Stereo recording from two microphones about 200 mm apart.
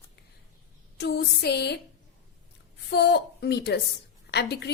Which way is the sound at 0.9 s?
55° left (ahead or behind).